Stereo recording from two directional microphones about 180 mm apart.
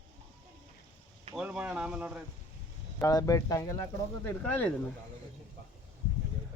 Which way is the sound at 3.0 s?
20° left (ahead or behind).